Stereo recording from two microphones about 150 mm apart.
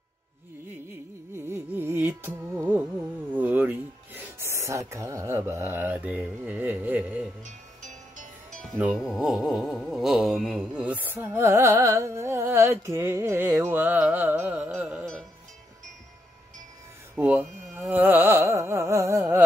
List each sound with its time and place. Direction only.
1.3 s music: 15° right (ahead or behind)
3.3 s speech: 10° right (ahead or behind)
7.4 s music: 55° right (ahead or behind)
8.7 s speech: 5° right (ahead or behind)
17.1 s carnatic music: 5° right (ahead or behind)